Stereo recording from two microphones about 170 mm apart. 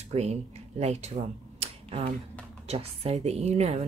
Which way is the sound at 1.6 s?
35° right (ahead or behind).